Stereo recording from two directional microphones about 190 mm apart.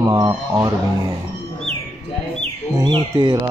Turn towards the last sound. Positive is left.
turn(degrees=-25)  # may be behind; listen again after turning